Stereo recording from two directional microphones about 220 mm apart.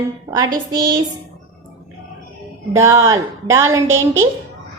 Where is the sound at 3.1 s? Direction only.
15° right (ahead or behind).